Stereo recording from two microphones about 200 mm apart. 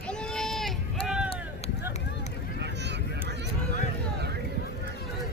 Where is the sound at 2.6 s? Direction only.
60° right (ahead or behind).